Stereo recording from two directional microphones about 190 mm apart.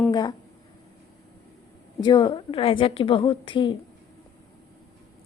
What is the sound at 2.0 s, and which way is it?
A woman's voice, 25° left (ahead or behind).